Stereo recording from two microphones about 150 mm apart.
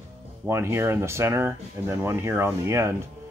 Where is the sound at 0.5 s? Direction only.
15° right (ahead or behind).